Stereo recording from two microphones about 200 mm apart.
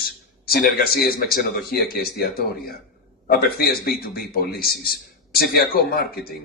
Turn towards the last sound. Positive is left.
turn(degrees=50)  # may be behind; listen again after turning